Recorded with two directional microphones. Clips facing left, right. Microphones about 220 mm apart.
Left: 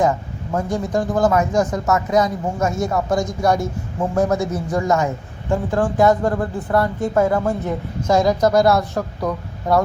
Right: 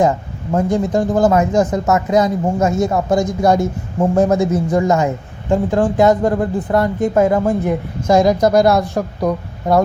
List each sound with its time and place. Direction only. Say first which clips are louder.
0.0 s a man's voice: right 3 dB; 25° right (ahead or behind)